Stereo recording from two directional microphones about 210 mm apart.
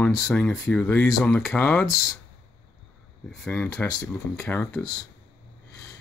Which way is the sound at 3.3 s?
5° left (ahead or behind).